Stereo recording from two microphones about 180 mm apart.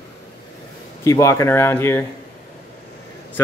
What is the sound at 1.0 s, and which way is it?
A man's voice, 15° left (ahead or behind).